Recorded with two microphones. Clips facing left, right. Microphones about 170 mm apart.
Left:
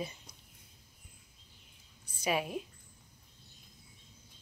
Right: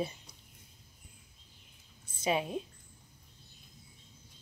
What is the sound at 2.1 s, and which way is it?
Speech, 25° right (ahead or behind).